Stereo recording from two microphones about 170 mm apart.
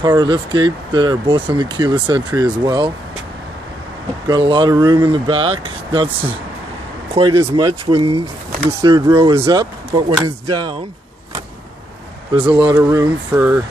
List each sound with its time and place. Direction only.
0.0 s speech: 25° right (ahead or behind)
4.3 s speech: 30° right (ahead or behind)
9.2 s speech: 35° right (ahead or behind)
12.3 s speech: 30° right (ahead or behind)